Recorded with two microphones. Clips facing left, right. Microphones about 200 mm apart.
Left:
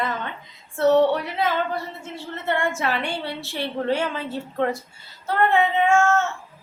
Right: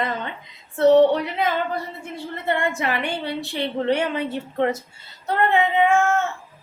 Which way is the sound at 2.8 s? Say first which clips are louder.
Right 1 dB; 15° right (ahead or behind).